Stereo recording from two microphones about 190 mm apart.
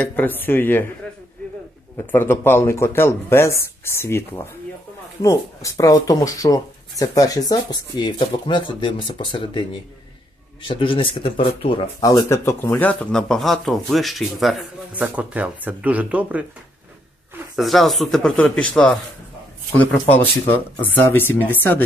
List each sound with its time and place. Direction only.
0.0 s speech: 10° left (ahead or behind)
2.0 s speech: 10° left (ahead or behind); by 11.9 s 30° left (ahead or behind)
12.0 s speech: 20° left (ahead or behind); by 16.4 s 5° right (ahead or behind)
17.6 s speech: centre (ahead or behind)